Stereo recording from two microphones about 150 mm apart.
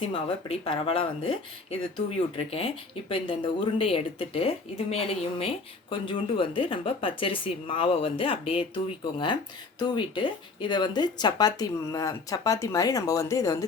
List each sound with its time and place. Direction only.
0.0 s speech: 35° left (ahead or behind)